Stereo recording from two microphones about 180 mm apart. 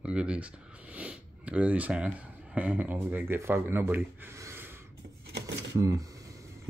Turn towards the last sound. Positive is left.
turn(degrees=-20)  # may be behind; listen again after turning